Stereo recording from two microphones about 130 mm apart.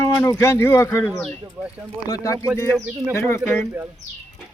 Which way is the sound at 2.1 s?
25° left (ahead or behind).